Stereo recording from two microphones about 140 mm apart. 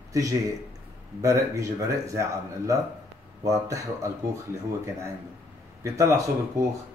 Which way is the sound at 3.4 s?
25° right (ahead or behind).